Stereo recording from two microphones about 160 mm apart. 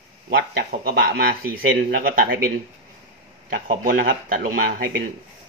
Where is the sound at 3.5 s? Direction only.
60° right (ahead or behind).